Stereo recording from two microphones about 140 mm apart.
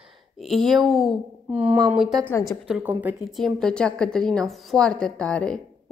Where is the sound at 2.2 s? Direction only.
20° left (ahead or behind).